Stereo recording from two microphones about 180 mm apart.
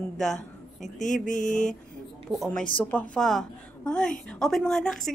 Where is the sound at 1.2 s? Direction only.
45° left (ahead or behind).